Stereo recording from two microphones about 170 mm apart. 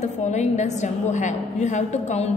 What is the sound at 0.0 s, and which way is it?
A woman's voice, 45° left (ahead or behind).